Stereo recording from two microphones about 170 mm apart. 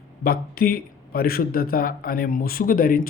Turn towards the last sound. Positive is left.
turn(degrees=55)  # may be behind; listen again after turning